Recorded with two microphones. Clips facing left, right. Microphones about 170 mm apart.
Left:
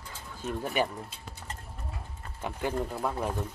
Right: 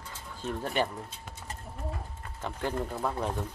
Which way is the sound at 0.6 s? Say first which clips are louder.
Left 1 dB; 5° left (ahead or behind).